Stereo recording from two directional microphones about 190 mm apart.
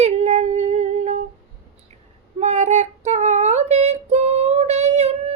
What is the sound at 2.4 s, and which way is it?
Female singing, 40° right (ahead or behind).